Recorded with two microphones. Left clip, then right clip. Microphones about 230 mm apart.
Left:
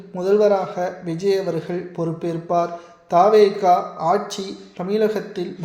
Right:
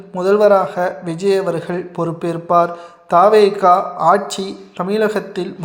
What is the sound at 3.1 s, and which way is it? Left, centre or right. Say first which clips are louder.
A man's voice: right 3 dB; centre.